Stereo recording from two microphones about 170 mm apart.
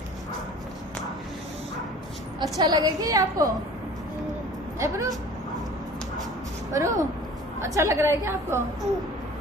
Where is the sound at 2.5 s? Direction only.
20° right (ahead or behind).